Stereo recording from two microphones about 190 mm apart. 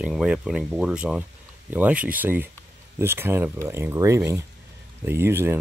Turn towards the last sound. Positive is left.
turn(degrees=-10)  # may be behind; listen again after turning